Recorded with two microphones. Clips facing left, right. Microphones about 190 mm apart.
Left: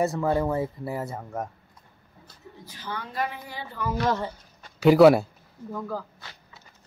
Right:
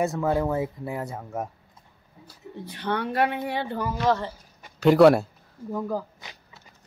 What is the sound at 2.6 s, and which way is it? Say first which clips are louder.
Speech: right 9 dB; 65° right (ahead or behind).